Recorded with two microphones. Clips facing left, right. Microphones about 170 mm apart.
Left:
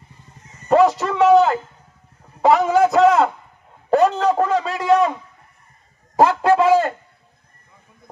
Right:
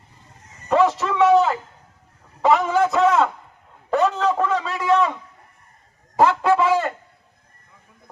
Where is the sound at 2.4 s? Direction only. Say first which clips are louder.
Left 3 dB; 35° left (ahead or behind).